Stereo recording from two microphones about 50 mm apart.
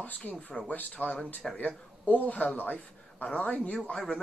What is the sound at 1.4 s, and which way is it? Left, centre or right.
Speech, centre.